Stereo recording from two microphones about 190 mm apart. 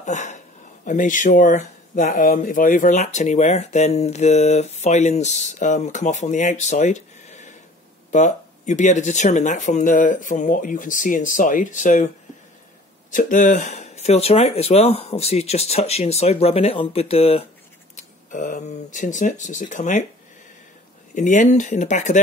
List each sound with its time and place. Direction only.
0.0 s speech: 40° left (ahead or behind)
13.1 s speech: 40° left (ahead or behind)
18.3 s speech: 45° left (ahead or behind)
21.1 s speech: 40° left (ahead or behind)